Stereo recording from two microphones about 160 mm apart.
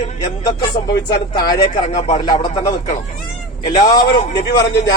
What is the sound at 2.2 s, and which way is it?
Speech, 30° left (ahead or behind).